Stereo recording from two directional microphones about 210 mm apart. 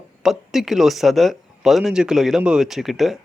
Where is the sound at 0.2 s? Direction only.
Centre (ahead or behind).